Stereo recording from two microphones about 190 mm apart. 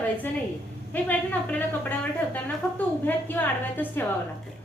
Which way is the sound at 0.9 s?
10° left (ahead or behind).